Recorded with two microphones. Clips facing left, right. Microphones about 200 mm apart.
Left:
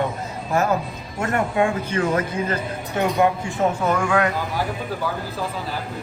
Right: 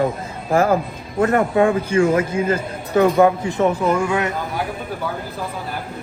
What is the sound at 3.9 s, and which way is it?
Speech, 25° right (ahead or behind).